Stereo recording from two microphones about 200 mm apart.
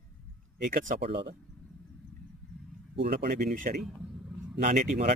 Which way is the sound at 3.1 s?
50° right (ahead or behind).